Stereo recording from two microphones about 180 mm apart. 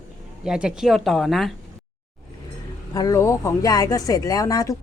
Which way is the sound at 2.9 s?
20° left (ahead or behind).